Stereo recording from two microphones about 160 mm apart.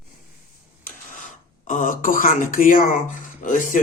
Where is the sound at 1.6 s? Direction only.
55° left (ahead or behind).